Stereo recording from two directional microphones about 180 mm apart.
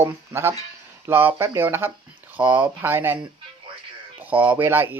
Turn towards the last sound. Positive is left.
turn(degrees=-10)  # may be behind; listen again after turning